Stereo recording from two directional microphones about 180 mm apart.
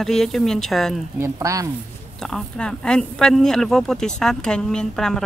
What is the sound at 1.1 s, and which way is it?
Speech, 15° right (ahead or behind).